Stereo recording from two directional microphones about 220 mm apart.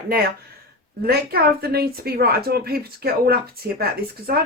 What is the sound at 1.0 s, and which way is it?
A woman's voice, 45° right (ahead or behind).